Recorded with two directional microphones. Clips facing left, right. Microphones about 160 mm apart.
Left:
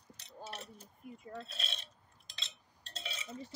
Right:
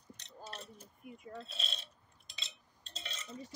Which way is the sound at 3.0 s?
10° left (ahead or behind).